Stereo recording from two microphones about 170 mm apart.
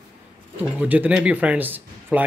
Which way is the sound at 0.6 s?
10° right (ahead or behind).